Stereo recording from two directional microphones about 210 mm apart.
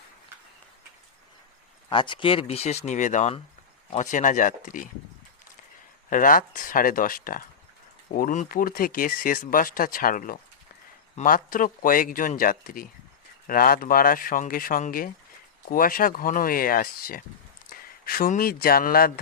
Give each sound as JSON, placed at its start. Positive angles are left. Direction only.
{"t": 1.9, "sound": "speech", "side_deg": 25}
{"t": 6.1, "sound": "speech", "side_deg": 40}